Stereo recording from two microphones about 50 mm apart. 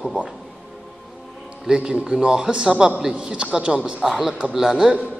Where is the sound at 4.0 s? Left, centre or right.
Centre.